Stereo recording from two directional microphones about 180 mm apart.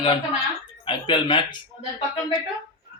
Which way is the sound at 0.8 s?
25° left (ahead or behind).